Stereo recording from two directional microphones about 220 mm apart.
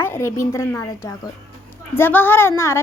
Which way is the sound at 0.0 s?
10° left (ahead or behind).